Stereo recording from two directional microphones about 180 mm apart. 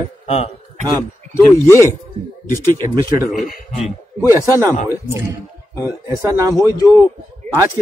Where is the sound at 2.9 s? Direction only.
20° right (ahead or behind).